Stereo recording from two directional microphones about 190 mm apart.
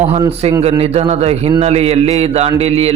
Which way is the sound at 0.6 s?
35° right (ahead or behind).